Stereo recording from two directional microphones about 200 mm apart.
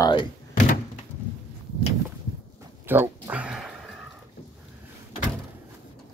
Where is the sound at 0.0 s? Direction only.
25° left (ahead or behind).